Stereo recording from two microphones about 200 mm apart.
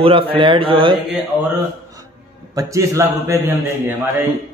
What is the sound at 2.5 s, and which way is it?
Speech, 15° right (ahead or behind).